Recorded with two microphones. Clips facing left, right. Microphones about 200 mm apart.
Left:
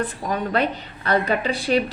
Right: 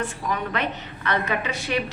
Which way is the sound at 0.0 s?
35° left (ahead or behind).